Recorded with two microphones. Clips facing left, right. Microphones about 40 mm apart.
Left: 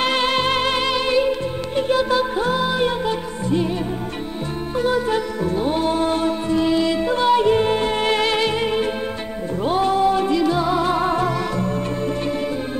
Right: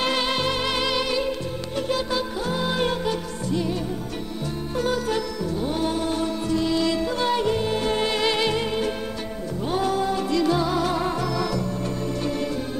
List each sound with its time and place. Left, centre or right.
0.0 s music: centre; by 2.7 s left
2.7 s music: centre
3.4 s music: left
4.7 s music: left
5.4 s music: left
9.7 s music: left
10.3 s music: centre; by 11.7 s left